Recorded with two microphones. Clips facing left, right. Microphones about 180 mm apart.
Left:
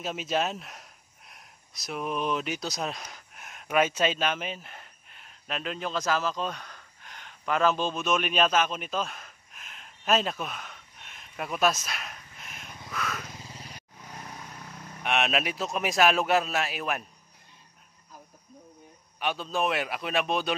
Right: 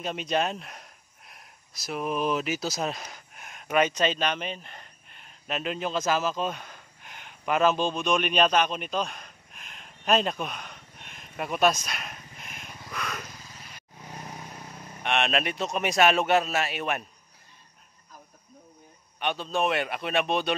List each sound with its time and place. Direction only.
0.0 s speech: 5° left (ahead or behind)
7.1 s a sound: 10° right (ahead or behind)
7.7 s a sound: 5° left (ahead or behind)
13.4 s vehicle: 30° left (ahead or behind)
15.0 s a man's voice: 5° left (ahead or behind)
19.1 s a man's voice: 5° left (ahead or behind)